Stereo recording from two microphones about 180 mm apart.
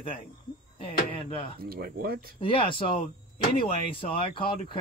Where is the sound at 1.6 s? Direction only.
55° right (ahead or behind).